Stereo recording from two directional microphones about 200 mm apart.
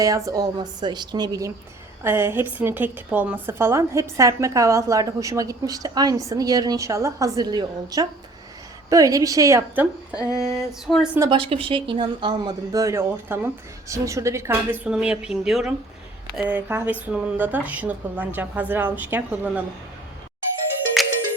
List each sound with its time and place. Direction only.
0.3 s a woman's voice: 20° right (ahead or behind); by 11.2 s 5° right (ahead or behind)
11.2 s a woman's voice: 25° right (ahead or behind); by 19.6 s 10° right (ahead or behind)
21.0 s music: centre (ahead or behind)